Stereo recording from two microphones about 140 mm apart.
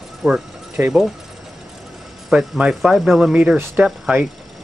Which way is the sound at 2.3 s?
5° right (ahead or behind).